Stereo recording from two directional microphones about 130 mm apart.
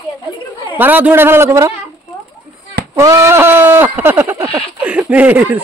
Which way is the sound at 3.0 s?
25° right (ahead or behind).